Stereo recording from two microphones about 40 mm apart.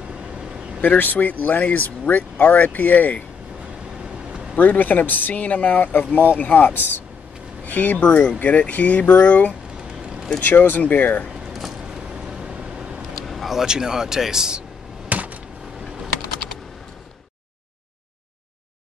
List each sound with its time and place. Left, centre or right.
0.8 s speech: left
4.0 s vehicle: right
4.6 s speech: left
7.6 s speech: left
10.4 s speech: left
11.2 s a sound: centre
11.9 s vehicle: right
13.1 s vehicle: centre
13.6 s speech: centre
15.0 s a sound: right